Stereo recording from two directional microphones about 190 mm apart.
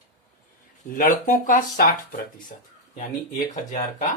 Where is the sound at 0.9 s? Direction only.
45° left (ahead or behind).